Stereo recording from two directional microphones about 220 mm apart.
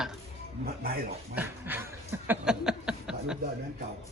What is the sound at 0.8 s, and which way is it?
Speech, 45° right (ahead or behind).